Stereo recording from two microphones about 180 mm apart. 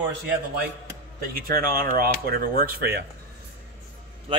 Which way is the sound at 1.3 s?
55° right (ahead or behind).